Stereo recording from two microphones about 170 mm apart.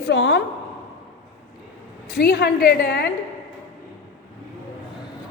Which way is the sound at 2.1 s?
70° left (ahead or behind).